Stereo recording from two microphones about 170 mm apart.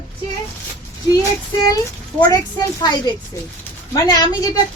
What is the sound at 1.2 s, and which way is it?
A woman's voice, 20° left (ahead or behind).